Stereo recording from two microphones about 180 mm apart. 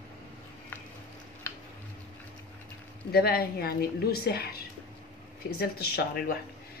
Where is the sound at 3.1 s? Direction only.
60° left (ahead or behind).